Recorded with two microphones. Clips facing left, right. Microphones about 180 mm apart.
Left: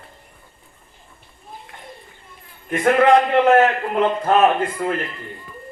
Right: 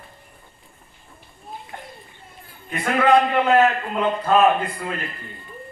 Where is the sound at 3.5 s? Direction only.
70° left (ahead or behind).